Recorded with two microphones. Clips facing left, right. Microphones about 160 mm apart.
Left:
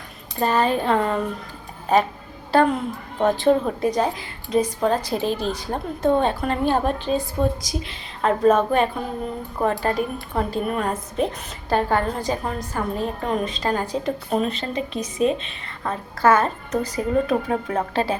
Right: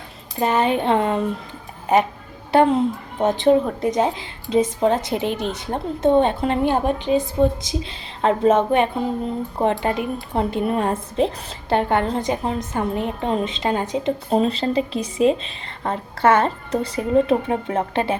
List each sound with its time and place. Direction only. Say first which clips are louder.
0.3 s a woman's voice: right 1 dB; 20° right (ahead or behind)
2.5 s a woman's voice: right 3 dB; 20° right (ahead or behind)